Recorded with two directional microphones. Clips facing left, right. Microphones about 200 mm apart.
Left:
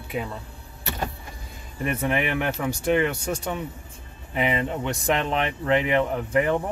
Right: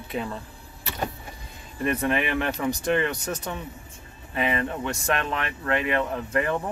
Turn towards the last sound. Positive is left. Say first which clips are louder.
# left 3 dB
turn(degrees=15)  # may be behind; listen again after turning